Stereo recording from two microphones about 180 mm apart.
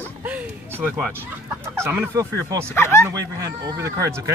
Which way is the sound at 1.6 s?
15° right (ahead or behind).